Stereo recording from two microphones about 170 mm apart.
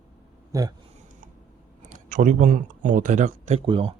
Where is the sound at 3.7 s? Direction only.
30° right (ahead or behind).